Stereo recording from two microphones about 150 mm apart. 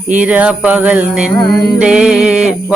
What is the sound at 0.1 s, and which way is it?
Music, 10° right (ahead or behind).